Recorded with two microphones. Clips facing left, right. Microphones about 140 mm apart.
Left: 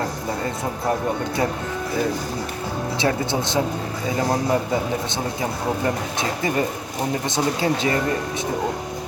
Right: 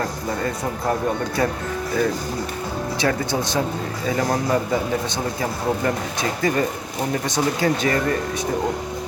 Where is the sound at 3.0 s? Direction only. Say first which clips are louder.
Even; 20° left (ahead or behind).